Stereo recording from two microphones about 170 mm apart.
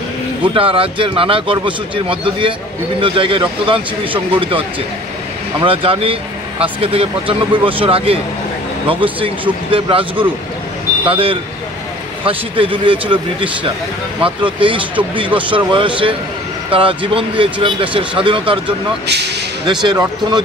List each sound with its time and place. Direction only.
0.6 s a man's voice: 30° right (ahead or behind)
19.6 s speech: 25° right (ahead or behind)